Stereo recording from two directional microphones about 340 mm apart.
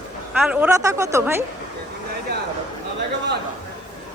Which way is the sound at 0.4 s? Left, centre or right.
Centre.